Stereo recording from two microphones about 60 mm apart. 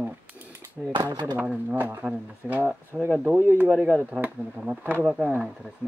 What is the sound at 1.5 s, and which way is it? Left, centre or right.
Speech, right.